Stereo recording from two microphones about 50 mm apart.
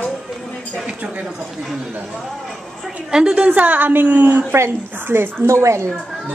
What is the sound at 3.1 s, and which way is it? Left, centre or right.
Speech, centre.